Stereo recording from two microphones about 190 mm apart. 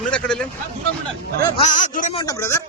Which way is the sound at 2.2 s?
15° left (ahead or behind).